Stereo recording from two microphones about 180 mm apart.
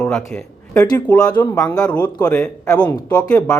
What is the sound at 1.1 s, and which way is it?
Speech, 5° left (ahead or behind).